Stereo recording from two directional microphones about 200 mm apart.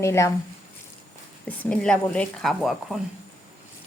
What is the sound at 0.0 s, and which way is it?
Speech, 15° left (ahead or behind).